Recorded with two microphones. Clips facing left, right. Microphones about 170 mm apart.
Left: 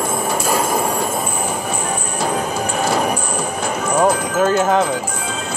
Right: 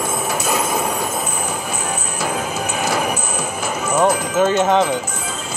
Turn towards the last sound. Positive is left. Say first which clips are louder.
# even
turn(degrees=5)  # may be behind; listen again after turning